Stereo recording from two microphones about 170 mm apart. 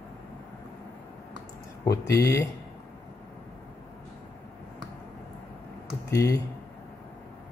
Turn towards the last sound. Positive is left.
turn(degrees=20)  # may be behind; listen again after turning